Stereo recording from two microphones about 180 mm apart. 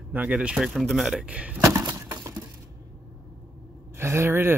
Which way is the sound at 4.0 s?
15° right (ahead or behind).